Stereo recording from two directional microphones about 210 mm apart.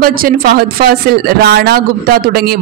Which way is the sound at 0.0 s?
45° right (ahead or behind).